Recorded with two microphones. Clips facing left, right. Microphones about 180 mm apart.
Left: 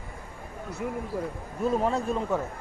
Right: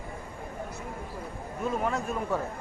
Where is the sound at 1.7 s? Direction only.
30° left (ahead or behind).